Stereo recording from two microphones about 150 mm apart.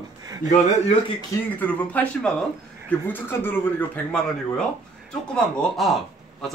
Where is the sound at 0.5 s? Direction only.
45° left (ahead or behind).